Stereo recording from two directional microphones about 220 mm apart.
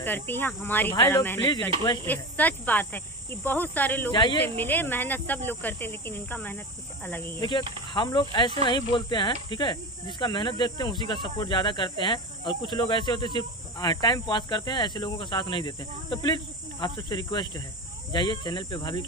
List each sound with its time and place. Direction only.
0.0 s speech: 10° left (ahead or behind)
4.1 s speech: 20° left (ahead or behind)
4.4 s speech: 10° left (ahead or behind)
7.9 s speech: 20° left (ahead or behind)